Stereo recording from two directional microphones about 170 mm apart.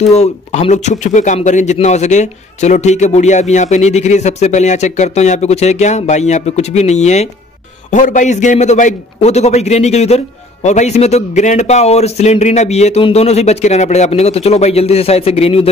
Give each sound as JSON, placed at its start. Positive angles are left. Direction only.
{"t": 0.0, "sound": "a man's voice", "side_deg": 40}